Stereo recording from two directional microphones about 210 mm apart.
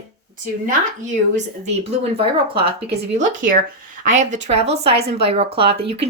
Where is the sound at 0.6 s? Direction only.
35° right (ahead or behind).